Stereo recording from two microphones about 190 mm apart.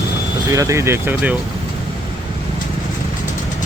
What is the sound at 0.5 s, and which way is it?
Speech, 15° right (ahead or behind).